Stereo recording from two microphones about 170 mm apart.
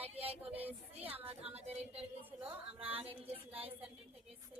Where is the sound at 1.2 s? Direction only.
35° right (ahead or behind).